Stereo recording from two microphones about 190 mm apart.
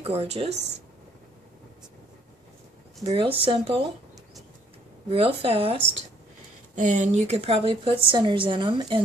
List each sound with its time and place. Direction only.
0.0 s a woman's voice: 30° right (ahead or behind)
3.1 s a woman's voice: 30° right (ahead or behind)
5.1 s a woman's voice: 30° right (ahead or behind)
6.7 s a woman's voice: 40° right (ahead or behind); by 9.0 s 25° right (ahead or behind)